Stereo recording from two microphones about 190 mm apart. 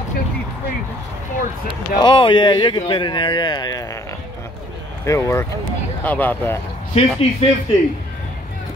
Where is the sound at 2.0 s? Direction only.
25° left (ahead or behind).